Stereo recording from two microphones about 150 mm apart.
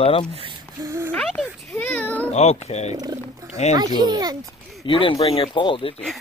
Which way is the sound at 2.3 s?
45° left (ahead or behind).